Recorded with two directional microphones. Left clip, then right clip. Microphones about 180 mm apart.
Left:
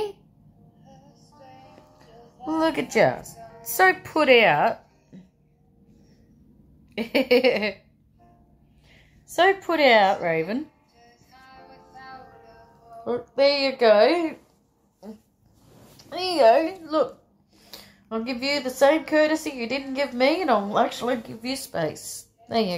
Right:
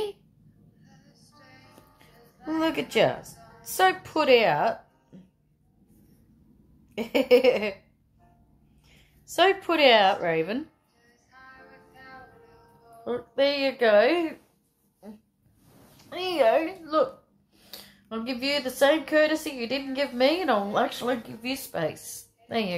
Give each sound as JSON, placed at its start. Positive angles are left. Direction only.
{"t": 2.0, "sound": "a sound", "side_deg": 5}
{"t": 4.1, "sound": "speech", "side_deg": 15}
{"t": 7.0, "sound": "a woman's voice", "side_deg": 20}
{"t": 9.3, "sound": "a woman's voice", "side_deg": 15}
{"t": 11.3, "sound": "music", "side_deg": 25}
{"t": 13.0, "sound": "speech", "side_deg": 20}
{"t": 16.1, "sound": "a woman's voice", "side_deg": 35}